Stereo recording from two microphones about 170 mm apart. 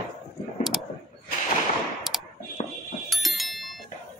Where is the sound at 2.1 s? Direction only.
Centre (ahead or behind).